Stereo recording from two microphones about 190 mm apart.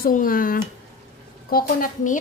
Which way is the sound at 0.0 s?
50° left (ahead or behind).